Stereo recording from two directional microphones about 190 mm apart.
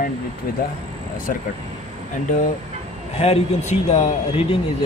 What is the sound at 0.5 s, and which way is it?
Speech, 50° left (ahead or behind).